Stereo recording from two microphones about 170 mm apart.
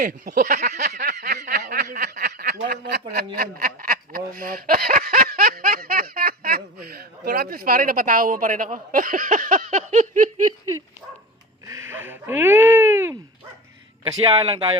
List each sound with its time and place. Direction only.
0.0 s speech: 50° right (ahead or behind)
1.5 s a sound: 55° right (ahead or behind)
3.3 s snicker: 60° right (ahead or behind)
6.8 s speech: 65° right (ahead or behind); by 10.2 s 45° right (ahead or behind)
11.6 s a sound: 15° right (ahead or behind)
14.1 s speech: 30° right (ahead or behind)